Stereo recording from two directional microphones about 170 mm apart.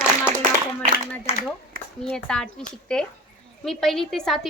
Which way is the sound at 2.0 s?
5° left (ahead or behind).